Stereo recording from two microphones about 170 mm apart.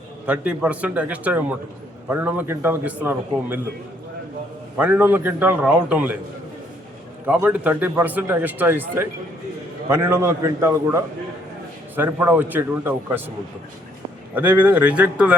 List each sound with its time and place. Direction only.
0.3 s speech: 5° right (ahead or behind)
4.8 s speech: 10° right (ahead or behind)
7.3 s speech: 10° right (ahead or behind)
14.3 s speech: 10° right (ahead or behind)